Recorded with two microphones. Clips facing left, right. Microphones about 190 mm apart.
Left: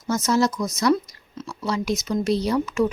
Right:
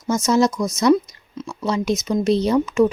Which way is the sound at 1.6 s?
20° right (ahead or behind).